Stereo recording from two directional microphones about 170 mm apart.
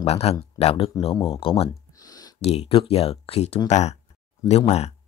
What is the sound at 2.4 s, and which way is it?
Speech, 35° left (ahead or behind).